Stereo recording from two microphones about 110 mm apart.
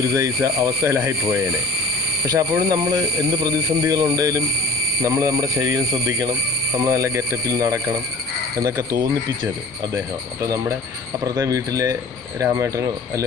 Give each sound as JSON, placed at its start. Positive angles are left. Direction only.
{"t": 0.0, "sound": "speech", "side_deg": -30}